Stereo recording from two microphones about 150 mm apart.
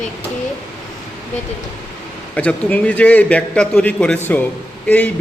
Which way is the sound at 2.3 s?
10° left (ahead or behind).